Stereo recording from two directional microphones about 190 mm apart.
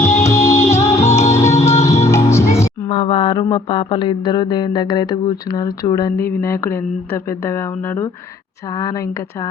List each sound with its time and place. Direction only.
0.0 s music: 15° left (ahead or behind)
2.9 s mantra: 25° left (ahead or behind)